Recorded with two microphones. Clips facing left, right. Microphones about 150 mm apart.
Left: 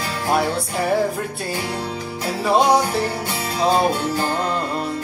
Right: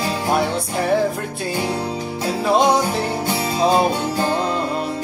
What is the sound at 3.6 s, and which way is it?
Music, 10° right (ahead or behind).